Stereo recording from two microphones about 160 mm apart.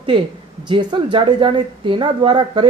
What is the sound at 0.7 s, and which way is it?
A woman's voice, 30° right (ahead or behind).